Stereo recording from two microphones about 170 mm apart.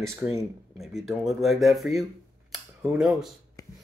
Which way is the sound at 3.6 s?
20° left (ahead or behind).